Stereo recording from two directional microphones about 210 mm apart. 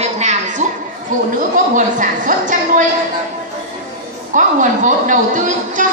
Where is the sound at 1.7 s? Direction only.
35° right (ahead or behind).